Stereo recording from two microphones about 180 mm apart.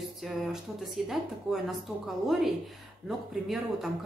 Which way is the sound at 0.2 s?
Centre (ahead or behind).